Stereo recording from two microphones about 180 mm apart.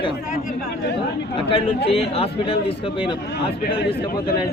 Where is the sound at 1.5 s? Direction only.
30° left (ahead or behind).